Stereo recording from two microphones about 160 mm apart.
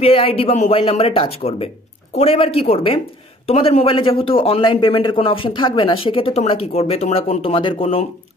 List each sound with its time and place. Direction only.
0.0 s speech: 35° left (ahead or behind)